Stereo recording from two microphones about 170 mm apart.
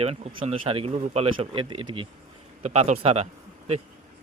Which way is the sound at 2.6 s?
40° right (ahead or behind).